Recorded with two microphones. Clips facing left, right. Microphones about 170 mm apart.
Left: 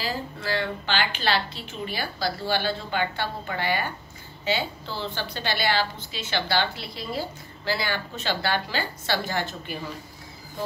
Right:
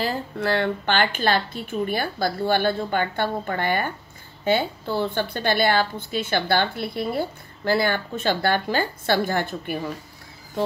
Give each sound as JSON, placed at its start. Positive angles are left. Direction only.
{"t": 0.0, "sound": "a woman's voice", "side_deg": -60}